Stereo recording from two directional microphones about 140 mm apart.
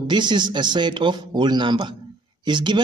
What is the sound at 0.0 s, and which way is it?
A man's voice, 30° right (ahead or behind).